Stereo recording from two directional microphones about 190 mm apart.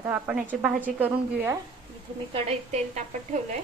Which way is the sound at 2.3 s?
35° right (ahead or behind).